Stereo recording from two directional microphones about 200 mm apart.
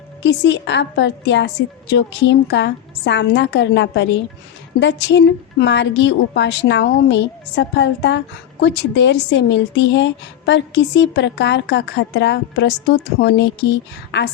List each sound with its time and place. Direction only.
0.2 s speech: 60° left (ahead or behind)